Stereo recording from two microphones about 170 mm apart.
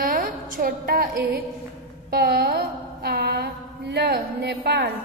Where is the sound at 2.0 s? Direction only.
65° right (ahead or behind).